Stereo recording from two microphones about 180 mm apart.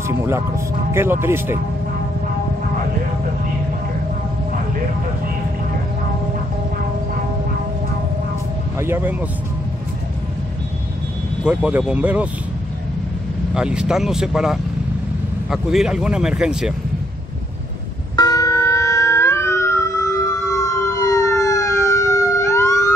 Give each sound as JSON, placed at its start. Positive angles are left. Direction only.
{"t": 1.2, "sound": "speech", "side_deg": -15}
{"t": 8.7, "sound": "speech", "side_deg": -15}
{"t": 11.4, "sound": "speech", "side_deg": -5}
{"t": 13.6, "sound": "speech", "side_deg": -5}
{"t": 18.1, "sound": "music", "side_deg": 20}